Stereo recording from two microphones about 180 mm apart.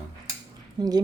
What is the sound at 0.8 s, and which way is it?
Speech, 20° right (ahead or behind).